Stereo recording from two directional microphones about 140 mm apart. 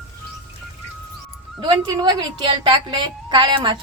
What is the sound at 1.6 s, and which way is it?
A woman's voice, 25° right (ahead or behind).